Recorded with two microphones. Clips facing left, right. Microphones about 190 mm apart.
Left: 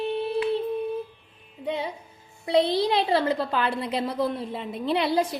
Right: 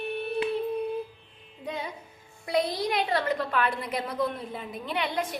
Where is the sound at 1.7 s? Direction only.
30° left (ahead or behind).